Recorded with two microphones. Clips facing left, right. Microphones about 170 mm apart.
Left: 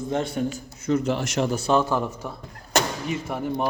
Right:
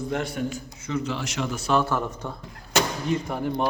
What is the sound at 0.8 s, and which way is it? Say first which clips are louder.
Speech: left 6 dB; 50° left (ahead or behind).